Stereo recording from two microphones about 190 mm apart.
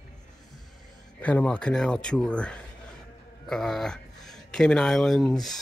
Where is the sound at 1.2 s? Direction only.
5° left (ahead or behind).